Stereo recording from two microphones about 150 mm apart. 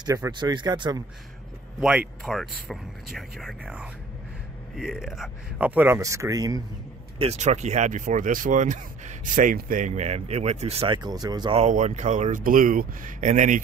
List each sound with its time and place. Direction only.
0.0 s speech: 25° right (ahead or behind)
1.8 s speech: 5° right (ahead or behind); by 6.6 s 25° right (ahead or behind)
7.2 s speech: 50° right (ahead or behind)
11.0 s speech: 25° right (ahead or behind)
11.5 s speech: 55° right (ahead or behind)